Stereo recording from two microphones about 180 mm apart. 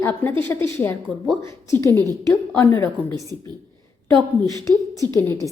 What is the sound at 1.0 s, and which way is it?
Speech, centre (ahead or behind).